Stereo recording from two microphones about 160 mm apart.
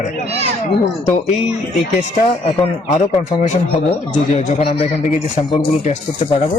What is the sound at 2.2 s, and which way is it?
Speech, 40° left (ahead or behind).